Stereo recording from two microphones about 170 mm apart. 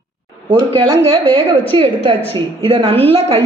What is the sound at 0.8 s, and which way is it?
A woman's voice, 35° right (ahead or behind).